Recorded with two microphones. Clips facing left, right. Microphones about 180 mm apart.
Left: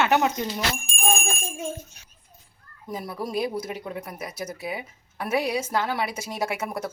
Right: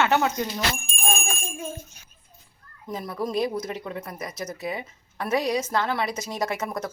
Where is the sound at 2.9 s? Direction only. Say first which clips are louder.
Right 2 dB; 10° left (ahead or behind).